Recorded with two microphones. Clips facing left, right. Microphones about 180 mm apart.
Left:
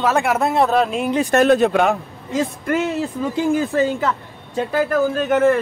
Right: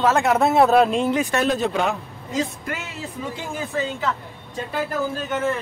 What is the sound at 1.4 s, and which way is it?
Speech, 60° left (ahead or behind).